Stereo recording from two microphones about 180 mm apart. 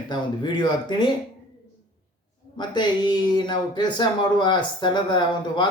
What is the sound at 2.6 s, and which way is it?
Speech, 25° left (ahead or behind).